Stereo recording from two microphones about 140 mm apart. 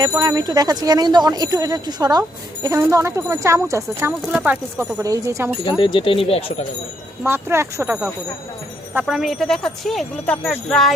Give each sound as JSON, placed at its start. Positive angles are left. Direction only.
{"t": 0.1, "sound": "speech", "side_deg": -25}
{"t": 5.6, "sound": "speech", "side_deg": 35}
{"t": 7.3, "sound": "speech", "side_deg": -15}
{"t": 9.0, "sound": "speech", "side_deg": -5}